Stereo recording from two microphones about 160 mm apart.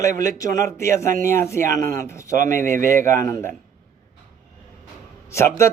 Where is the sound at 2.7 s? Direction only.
55° right (ahead or behind).